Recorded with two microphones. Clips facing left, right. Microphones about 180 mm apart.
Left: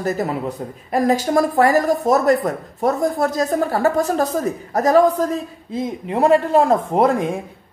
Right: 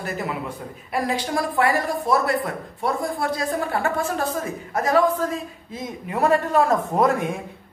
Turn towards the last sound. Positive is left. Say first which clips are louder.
# left 4 dB
turn(degrees=30)  # may be behind; listen again after turning